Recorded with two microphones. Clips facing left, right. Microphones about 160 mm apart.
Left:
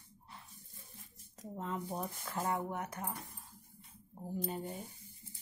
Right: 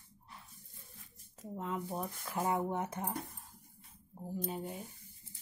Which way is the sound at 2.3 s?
20° right (ahead or behind).